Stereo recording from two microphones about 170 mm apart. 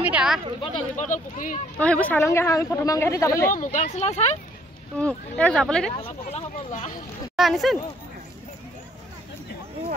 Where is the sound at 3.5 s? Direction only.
50° left (ahead or behind).